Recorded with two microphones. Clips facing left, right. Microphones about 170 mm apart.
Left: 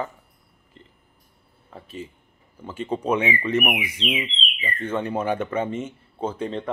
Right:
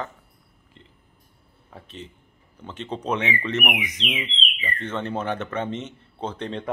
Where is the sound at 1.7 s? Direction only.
5° left (ahead or behind).